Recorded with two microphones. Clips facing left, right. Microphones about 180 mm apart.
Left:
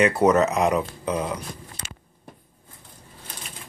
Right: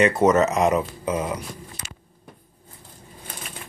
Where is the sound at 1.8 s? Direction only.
25° left (ahead or behind).